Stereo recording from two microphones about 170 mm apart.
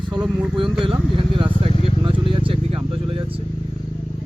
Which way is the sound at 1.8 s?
30° right (ahead or behind).